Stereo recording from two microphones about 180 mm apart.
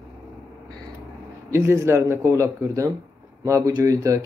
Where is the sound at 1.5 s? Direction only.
15° right (ahead or behind).